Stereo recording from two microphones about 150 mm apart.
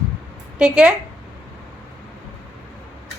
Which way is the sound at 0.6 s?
5° right (ahead or behind).